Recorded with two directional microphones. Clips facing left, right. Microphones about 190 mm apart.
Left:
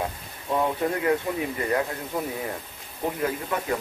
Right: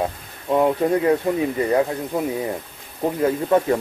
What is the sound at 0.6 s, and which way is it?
Speech, 25° right (ahead or behind).